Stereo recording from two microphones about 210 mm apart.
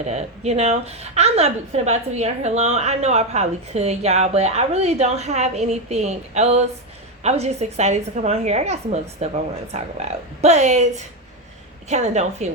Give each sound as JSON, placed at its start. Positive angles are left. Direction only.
{"t": 0.0, "sound": "a woman's voice", "side_deg": -30}